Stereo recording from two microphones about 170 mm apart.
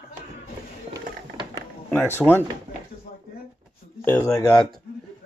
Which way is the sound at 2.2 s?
Centre (ahead or behind).